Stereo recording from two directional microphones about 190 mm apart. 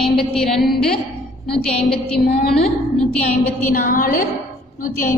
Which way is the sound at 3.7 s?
45° left (ahead or behind).